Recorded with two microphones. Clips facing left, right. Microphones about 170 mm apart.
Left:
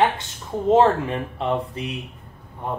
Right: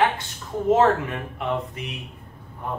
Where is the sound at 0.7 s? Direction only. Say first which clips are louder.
Left 3 dB; 30° left (ahead or behind).